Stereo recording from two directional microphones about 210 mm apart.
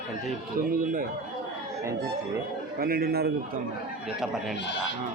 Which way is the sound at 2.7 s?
45° right (ahead or behind).